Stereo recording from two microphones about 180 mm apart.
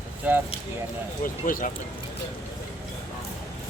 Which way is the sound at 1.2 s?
50° left (ahead or behind).